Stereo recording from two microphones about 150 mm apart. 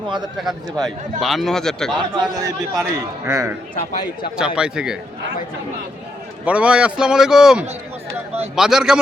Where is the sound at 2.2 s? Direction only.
25° right (ahead or behind).